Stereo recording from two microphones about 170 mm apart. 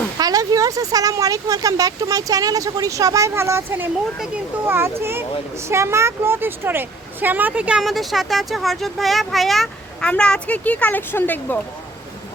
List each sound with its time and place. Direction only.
0.2 s speech: 20° right (ahead or behind); by 11.6 s 10° left (ahead or behind)